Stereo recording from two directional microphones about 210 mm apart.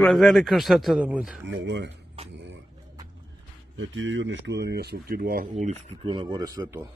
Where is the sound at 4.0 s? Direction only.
60° right (ahead or behind); by 6.1 s 35° right (ahead or behind).